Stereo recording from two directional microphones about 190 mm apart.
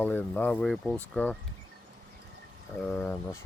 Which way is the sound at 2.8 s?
5° left (ahead or behind).